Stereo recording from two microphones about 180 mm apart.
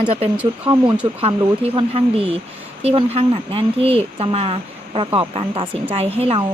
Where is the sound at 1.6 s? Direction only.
30° right (ahead or behind).